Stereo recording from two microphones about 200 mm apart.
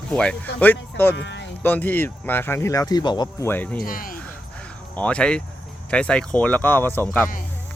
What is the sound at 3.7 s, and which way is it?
Speech, 45° left (ahead or behind).